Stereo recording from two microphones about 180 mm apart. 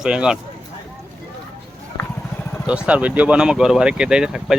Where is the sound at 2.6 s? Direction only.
5° right (ahead or behind).